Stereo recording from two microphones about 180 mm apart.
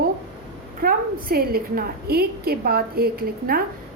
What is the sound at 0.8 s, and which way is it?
A woman's voice, 55° right (ahead or behind).